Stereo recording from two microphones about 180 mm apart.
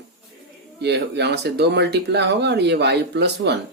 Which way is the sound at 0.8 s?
70° right (ahead or behind).